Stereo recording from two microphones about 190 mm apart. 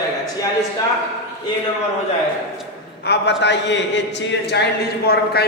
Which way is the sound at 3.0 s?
60° left (ahead or behind).